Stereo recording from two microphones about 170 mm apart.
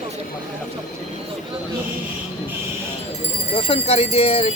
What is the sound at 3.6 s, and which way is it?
Speech, 35° left (ahead or behind).